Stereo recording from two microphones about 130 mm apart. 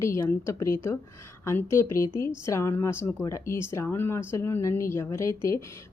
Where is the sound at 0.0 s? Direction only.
20° left (ahead or behind).